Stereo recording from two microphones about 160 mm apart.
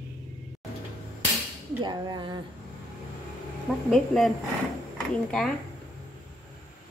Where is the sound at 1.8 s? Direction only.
25° right (ahead or behind).